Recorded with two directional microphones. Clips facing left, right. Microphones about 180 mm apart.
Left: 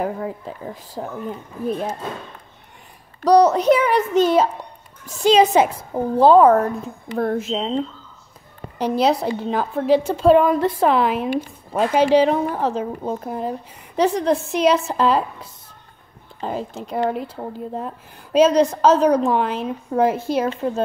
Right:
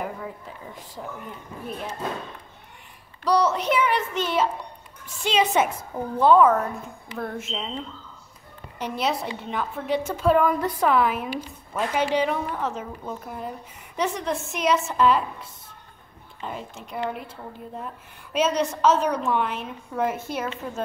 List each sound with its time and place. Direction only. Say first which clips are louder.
0.0 s speech: left 8 dB; 35° left (ahead or behind)
3.2 s speech: left 8 dB; 40° left (ahead or behind)
16.3 s speech: left 8 dB; 35° left (ahead or behind)